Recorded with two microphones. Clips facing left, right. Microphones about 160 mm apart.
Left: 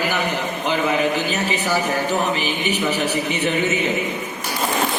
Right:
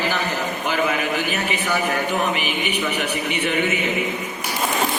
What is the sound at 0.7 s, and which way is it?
A man's voice, 25° left (ahead or behind).